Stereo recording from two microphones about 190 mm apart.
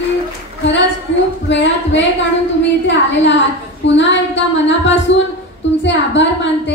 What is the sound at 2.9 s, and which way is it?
A woman's voice, 70° left (ahead or behind).